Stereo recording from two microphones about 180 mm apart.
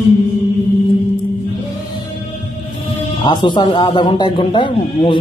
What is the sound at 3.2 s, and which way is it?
A man's voice, 25° left (ahead or behind).